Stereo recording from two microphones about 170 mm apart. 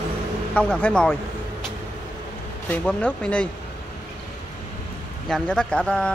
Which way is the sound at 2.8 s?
5° left (ahead or behind).